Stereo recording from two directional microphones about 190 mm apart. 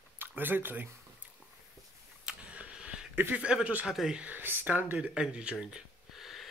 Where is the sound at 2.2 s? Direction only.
5° right (ahead or behind).